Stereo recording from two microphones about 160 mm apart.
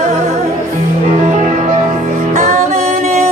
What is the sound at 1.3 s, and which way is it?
Music, 50° right (ahead or behind).